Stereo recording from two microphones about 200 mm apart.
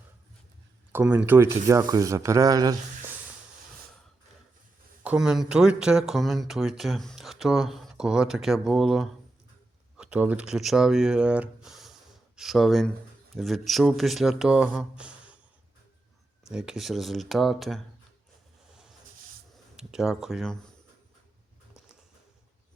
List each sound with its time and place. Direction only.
0.9 s speech: 10° right (ahead or behind)
5.0 s speech: 5° right (ahead or behind)
16.5 s speech: 5° right (ahead or behind)
19.7 s speech: 5° right (ahead or behind)